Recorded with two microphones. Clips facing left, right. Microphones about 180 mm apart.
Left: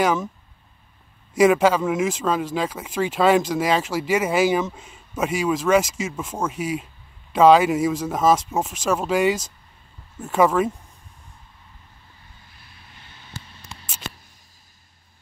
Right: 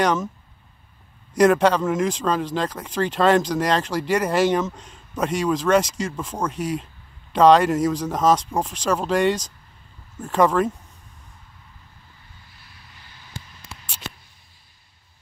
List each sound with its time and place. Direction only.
0.0 s speech: 5° left (ahead or behind)
1.3 s speech: 5° left (ahead or behind)
13.4 s a sound: 15° right (ahead or behind)